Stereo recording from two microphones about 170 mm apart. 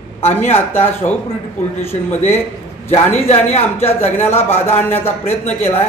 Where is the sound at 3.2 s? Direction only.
40° left (ahead or behind).